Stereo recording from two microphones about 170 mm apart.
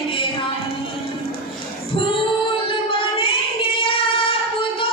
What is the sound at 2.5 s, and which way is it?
Singing, 30° left (ahead or behind).